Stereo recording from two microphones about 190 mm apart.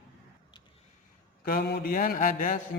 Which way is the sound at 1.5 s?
55° left (ahead or behind).